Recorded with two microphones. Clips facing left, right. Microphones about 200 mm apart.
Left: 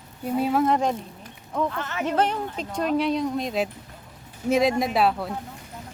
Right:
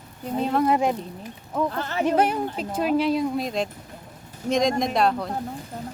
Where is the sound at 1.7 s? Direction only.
35° right (ahead or behind).